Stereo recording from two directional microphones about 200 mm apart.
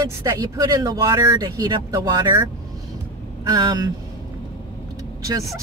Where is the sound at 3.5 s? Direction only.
20° right (ahead or behind).